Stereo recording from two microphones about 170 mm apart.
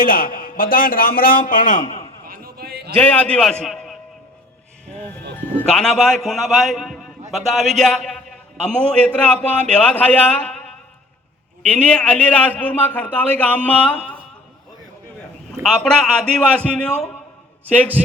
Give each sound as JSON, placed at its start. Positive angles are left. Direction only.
{"t": 0.0, "sound": "a man's voice", "side_deg": 55}
{"t": 2.2, "sound": "a sound", "side_deg": -60}
{"t": 2.9, "sound": "a man's voice", "side_deg": 10}
{"t": 5.4, "sound": "a man's voice", "side_deg": 5}
{"t": 11.7, "sound": "a man's voice", "side_deg": 5}
{"t": 15.8, "sound": "a man's voice", "side_deg": 5}